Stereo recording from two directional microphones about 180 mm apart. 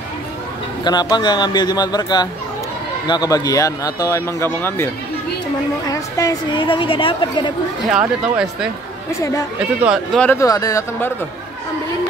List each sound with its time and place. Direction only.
0.8 s a woman's voice: 25° left (ahead or behind)
7.9 s speech: 5° right (ahead or behind)
9.8 s speech: centre (ahead or behind)
10.3 s a woman's voice: 20° left (ahead or behind)